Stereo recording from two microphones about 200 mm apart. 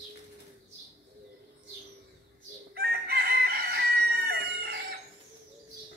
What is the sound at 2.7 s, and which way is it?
Chicken, 50° right (ahead or behind).